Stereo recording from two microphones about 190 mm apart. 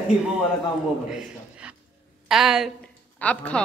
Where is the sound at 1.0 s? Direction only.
5° right (ahead or behind).